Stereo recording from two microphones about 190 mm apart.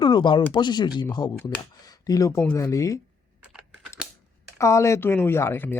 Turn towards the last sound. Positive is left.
turn(degrees=10)  # may be behind; listen again after turning